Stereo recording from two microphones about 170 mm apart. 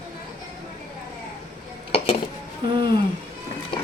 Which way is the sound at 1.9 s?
35° left (ahead or behind).